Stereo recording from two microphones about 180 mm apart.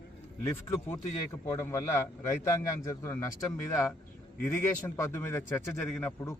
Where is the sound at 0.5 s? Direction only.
15° left (ahead or behind).